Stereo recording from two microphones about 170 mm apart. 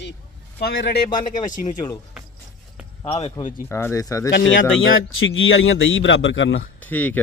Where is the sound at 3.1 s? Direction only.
35° left (ahead or behind).